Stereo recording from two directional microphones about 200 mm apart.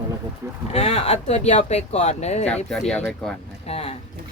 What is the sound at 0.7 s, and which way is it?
Speech, 30° left (ahead or behind).